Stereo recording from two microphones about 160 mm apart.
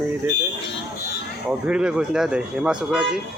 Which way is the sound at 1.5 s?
5° right (ahead or behind).